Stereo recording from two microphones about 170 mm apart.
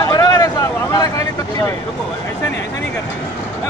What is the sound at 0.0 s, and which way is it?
Vehicle, 20° left (ahead or behind).